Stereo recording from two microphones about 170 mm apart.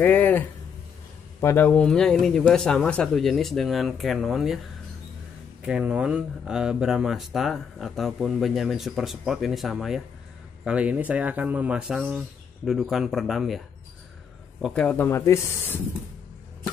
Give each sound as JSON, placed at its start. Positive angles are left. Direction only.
{"t": 0.0, "sound": "a man's voice", "side_deg": 10}
{"t": 1.7, "sound": "speech", "side_deg": 5}
{"t": 5.6, "sound": "speech", "side_deg": -5}
{"t": 14.6, "sound": "speech", "side_deg": 5}